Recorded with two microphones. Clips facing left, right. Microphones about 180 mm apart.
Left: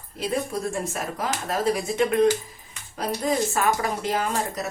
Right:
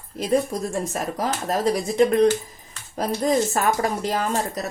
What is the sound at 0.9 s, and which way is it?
A woman's voice, 35° right (ahead or behind).